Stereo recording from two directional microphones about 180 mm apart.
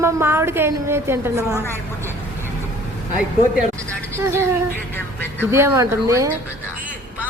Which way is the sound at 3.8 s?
15° right (ahead or behind).